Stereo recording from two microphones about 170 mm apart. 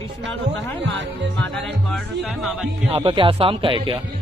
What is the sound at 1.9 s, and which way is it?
Speech, centre (ahead or behind).